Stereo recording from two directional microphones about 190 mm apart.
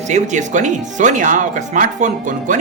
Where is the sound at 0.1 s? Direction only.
40° right (ahead or behind).